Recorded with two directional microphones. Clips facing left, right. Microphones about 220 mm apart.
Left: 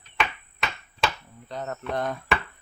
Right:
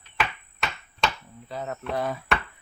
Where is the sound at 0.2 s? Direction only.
Centre (ahead or behind).